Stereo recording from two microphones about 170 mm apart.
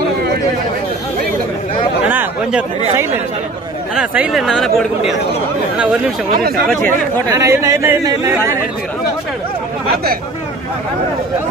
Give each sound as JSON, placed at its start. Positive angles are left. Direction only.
{"t": 2.0, "sound": "chatter", "side_deg": -10}
{"t": 3.9, "sound": "speech", "side_deg": -5}
{"t": 7.3, "sound": "speech", "side_deg": -15}